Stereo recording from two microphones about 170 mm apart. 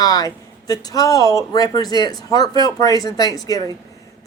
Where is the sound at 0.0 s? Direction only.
20° left (ahead or behind).